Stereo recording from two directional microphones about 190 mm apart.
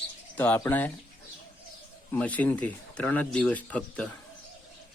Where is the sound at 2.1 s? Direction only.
10° left (ahead or behind).